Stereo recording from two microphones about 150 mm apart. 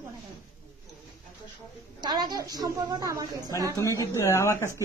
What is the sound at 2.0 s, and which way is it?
A woman's voice, 30° right (ahead or behind).